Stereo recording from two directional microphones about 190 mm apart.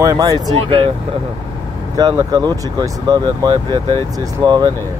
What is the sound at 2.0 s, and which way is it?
Speech, 20° right (ahead or behind).